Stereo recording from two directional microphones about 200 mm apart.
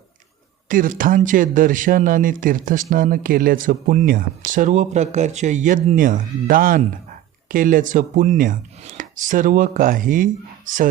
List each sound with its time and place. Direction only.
0.7 s speech: 40° right (ahead or behind)
7.4 s chopping: 45° right (ahead or behind)